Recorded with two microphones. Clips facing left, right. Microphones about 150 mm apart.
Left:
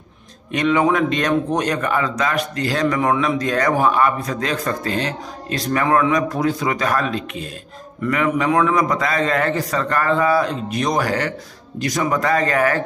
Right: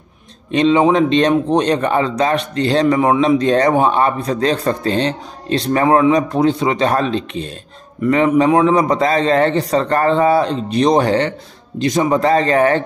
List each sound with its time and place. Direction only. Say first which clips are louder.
0.5 s a man's voice: right 5 dB; 25° right (ahead or behind)